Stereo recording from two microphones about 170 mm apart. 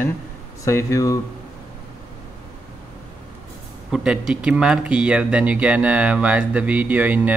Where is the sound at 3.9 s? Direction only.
5° right (ahead or behind).